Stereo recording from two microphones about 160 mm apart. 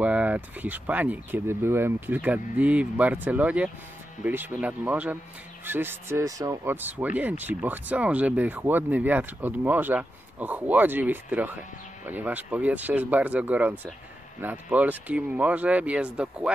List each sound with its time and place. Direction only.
0.0 s speech: 10° right (ahead or behind)